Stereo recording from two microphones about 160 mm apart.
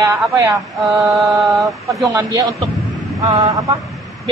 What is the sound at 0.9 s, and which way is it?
Mantra, centre (ahead or behind).